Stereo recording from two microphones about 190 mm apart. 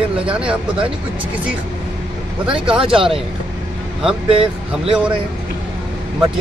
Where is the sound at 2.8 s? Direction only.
30° right (ahead or behind).